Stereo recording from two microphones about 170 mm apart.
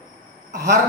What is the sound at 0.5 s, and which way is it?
Speech, 20° right (ahead or behind).